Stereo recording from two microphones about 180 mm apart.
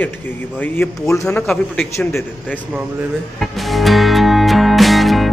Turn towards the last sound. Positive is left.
turn(degrees=0)  # may be behind; listen again after turning